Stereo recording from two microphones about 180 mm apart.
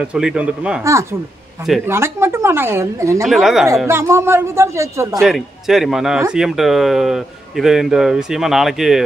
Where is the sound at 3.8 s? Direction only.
15° right (ahead or behind).